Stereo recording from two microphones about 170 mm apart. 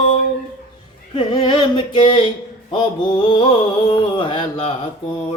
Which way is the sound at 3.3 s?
30° left (ahead or behind).